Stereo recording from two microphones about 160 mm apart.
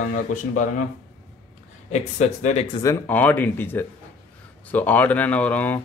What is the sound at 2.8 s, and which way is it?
Speech, 15° left (ahead or behind).